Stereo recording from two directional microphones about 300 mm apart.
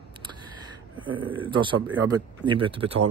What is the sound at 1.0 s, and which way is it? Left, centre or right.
Speech, centre.